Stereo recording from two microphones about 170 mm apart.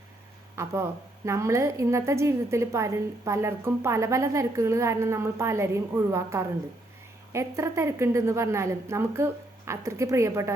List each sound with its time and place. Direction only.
0.5 s a woman's voice: 15° right (ahead or behind)